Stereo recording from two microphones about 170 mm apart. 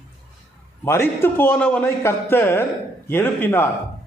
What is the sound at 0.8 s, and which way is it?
A man's voice, 15° left (ahead or behind).